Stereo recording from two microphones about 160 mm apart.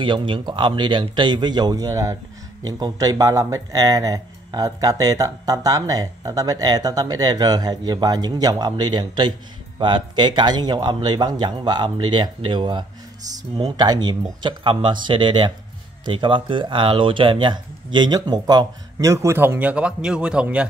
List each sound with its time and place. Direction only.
0.0 s speech: 30° right (ahead or behind); by 20.6 s 5° right (ahead or behind)